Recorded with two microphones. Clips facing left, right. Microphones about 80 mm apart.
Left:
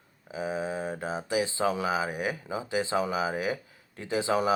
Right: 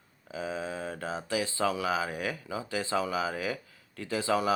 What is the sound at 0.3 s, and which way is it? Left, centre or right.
Speech, left.